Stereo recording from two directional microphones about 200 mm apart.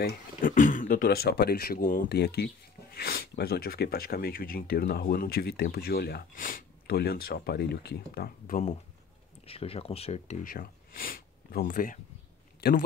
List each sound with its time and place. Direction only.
0.0 s speech: 45° left (ahead or behind)
9.5 s speech: 30° left (ahead or behind)
10.5 s speech: 45° left (ahead or behind)